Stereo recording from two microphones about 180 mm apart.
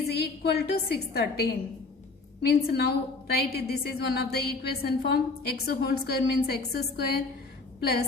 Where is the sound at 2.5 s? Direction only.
60° left (ahead or behind).